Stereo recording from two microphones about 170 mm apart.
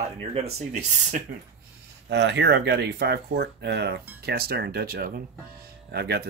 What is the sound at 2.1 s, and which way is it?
Speech, 90° right.